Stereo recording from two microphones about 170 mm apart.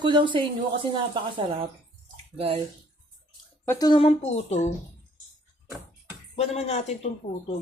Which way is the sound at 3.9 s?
35° left (ahead or behind).